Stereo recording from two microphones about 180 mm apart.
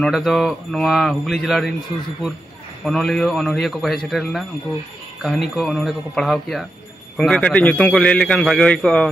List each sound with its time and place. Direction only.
0.0 s a man's voice: centre (ahead or behind)
2.8 s a man's voice: centre (ahead or behind)